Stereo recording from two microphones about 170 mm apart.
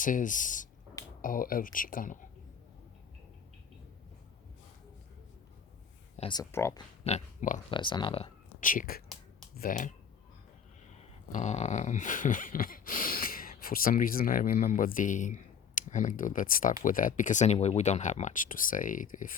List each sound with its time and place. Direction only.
0.0 s speech: 50° left (ahead or behind)
6.1 s speech: 25° left (ahead or behind)
6.5 s speech: 15° left (ahead or behind)
7.0 s pig: 45° left (ahead or behind)
7.7 s speech: 25° left (ahead or behind)
8.6 s speech: 55° left (ahead or behind)
11.3 s speech: 45° left (ahead or behind)